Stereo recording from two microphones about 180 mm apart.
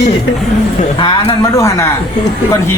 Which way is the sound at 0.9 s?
25° left (ahead or behind).